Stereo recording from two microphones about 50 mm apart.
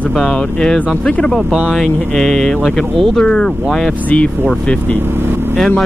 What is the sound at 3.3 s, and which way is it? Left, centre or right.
Speech, centre.